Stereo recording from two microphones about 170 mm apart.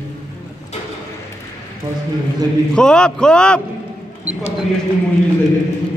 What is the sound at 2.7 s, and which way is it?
Speech, 5° left (ahead or behind).